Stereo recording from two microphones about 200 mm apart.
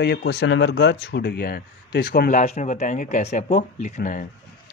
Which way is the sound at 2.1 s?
40° left (ahead or behind).